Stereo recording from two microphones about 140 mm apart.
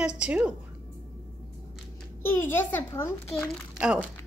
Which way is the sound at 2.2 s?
15° left (ahead or behind).